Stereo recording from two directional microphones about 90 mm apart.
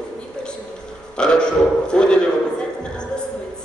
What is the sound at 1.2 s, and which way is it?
Burping, 10° left (ahead or behind).